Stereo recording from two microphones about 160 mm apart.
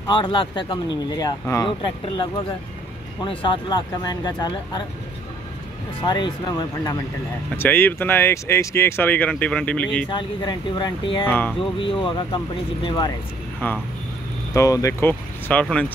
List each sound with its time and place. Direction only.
0.0 s speech: 30° left (ahead or behind)
3.3 s speech: 30° left (ahead or behind)
6.0 s speech: 30° left (ahead or behind)
7.5 s speech: 15° left (ahead or behind)
10.0 s speech: 30° left (ahead or behind)
11.2 s speech: 10° left (ahead or behind)
11.8 s speech: 30° left (ahead or behind)
13.6 s speech: 10° left (ahead or behind)